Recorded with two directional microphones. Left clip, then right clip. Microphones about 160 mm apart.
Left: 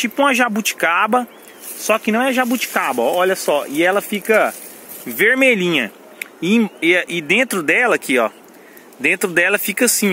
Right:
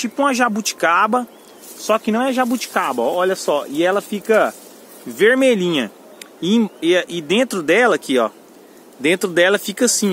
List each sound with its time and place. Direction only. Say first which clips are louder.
0.0 s speech: left 2 dB; 25° left (ahead or behind); by 9.9 s 5° left (ahead or behind)